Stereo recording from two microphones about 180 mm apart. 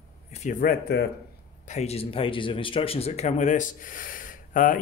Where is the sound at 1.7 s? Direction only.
35° left (ahead or behind).